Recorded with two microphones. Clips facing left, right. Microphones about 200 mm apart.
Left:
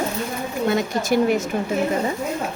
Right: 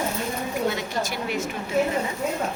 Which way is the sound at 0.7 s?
50° left (ahead or behind).